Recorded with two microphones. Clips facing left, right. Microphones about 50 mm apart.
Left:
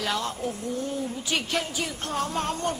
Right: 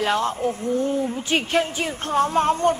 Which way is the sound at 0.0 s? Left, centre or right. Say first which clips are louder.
Right 7 dB; right.